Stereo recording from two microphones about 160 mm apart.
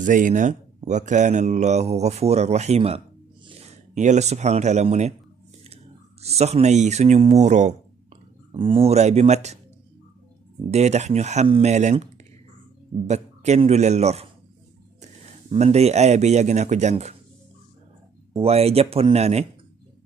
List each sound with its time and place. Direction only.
0.0 s speech: 55° right (ahead or behind)
6.2 s speech: 40° right (ahead or behind)
8.5 s speech: 35° right (ahead or behind)
10.7 s speech: 45° right (ahead or behind)
15.5 s speech: 45° right (ahead or behind)
18.3 s speech: 40° right (ahead or behind)